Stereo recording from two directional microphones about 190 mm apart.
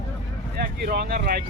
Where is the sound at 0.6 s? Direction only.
55° right (ahead or behind).